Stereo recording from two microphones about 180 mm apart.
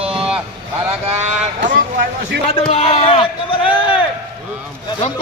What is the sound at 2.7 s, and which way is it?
Speech, 35° left (ahead or behind).